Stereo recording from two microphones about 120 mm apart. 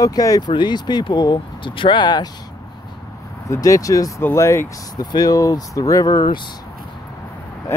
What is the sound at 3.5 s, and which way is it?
Speech, 30° left (ahead or behind).